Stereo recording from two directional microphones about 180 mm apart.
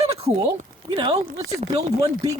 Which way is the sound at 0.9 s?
30° right (ahead or behind).